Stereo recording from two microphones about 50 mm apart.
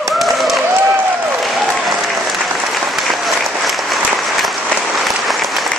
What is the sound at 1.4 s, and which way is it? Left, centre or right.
Applause, centre.